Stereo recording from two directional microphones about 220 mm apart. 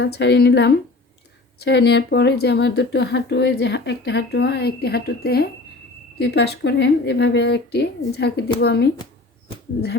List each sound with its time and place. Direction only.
0.0 s speech: 50° left (ahead or behind)